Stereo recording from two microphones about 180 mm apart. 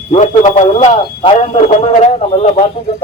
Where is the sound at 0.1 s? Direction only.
35° left (ahead or behind).